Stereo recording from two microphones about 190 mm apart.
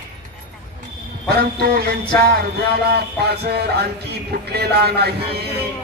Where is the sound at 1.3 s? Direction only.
55° right (ahead or behind).